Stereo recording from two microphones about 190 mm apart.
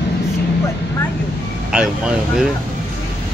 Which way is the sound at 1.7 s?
5° right (ahead or behind).